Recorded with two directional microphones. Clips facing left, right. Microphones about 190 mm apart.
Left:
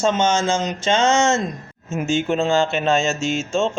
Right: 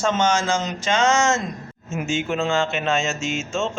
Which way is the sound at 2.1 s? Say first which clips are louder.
Left 4 dB; 35° left (ahead or behind).